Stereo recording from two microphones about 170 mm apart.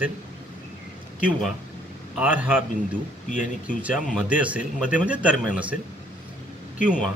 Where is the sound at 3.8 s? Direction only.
5° right (ahead or behind).